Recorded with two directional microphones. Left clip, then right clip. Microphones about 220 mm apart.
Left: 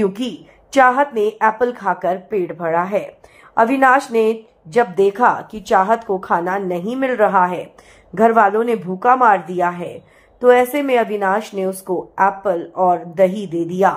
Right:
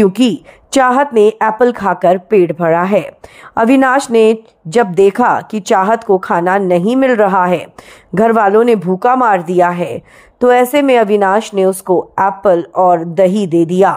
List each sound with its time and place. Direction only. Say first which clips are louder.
0.0 s a woman's voice: right 9 dB; 45° right (ahead or behind)